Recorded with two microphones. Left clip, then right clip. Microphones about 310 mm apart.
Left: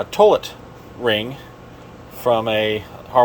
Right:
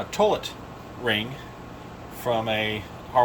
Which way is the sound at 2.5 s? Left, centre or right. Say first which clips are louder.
Left 7 dB; centre.